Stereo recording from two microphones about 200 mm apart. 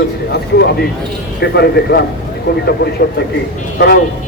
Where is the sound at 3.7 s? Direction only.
50° left (ahead or behind).